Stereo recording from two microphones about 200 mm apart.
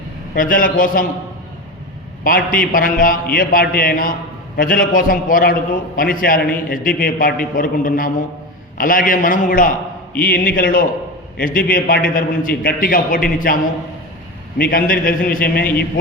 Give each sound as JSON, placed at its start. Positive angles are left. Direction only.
{"t": 0.3, "sound": "a man's voice", "side_deg": 45}
{"t": 2.2, "sound": "a man's voice", "side_deg": 45}
{"t": 14.7, "sound": "a man's voice", "side_deg": 45}